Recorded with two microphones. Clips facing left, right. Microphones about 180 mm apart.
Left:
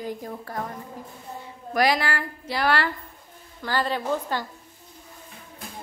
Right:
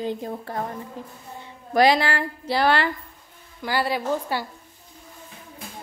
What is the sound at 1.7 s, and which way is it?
A woman's voice, 25° right (ahead or behind).